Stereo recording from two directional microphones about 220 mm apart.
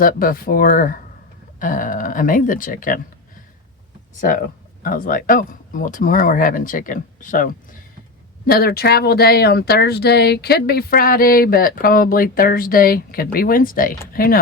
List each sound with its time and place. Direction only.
0.0 s speech: 40° left (ahead or behind)
4.2 s speech: 40° left (ahead or behind)